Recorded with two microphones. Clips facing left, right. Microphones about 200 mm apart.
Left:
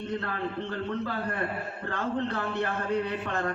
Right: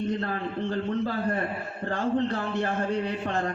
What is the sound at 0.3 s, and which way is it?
A man's voice, 35° right (ahead or behind).